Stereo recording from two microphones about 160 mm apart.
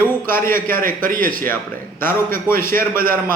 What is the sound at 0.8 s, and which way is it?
Speech, 60° right (ahead or behind).